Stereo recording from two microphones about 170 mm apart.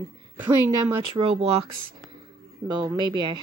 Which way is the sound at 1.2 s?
35° right (ahead or behind).